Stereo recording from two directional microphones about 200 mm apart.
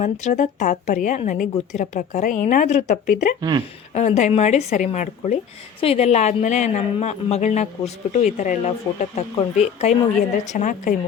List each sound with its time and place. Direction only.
0.0 s speech: 35° left (ahead or behind)